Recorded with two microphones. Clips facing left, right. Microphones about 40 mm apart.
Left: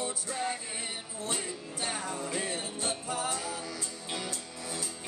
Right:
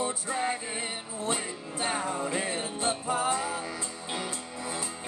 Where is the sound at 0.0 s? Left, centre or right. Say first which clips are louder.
Right 4 dB; right.